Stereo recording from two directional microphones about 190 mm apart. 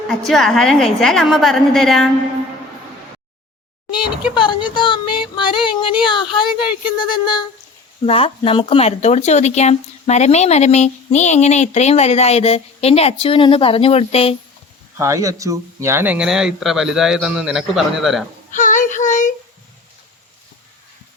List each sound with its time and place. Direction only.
0.1 s speech: centre (ahead or behind)
3.9 s speech: 5° right (ahead or behind)
4.4 s a sound: 25° left (ahead or behind)
8.0 s speech: 30° left (ahead or behind)
14.9 s speech: 15° right (ahead or behind)
18.5 s child singing: 40° left (ahead or behind)